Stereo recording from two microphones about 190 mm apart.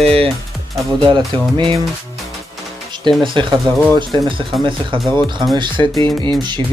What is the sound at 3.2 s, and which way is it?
Speech, 25° right (ahead or behind).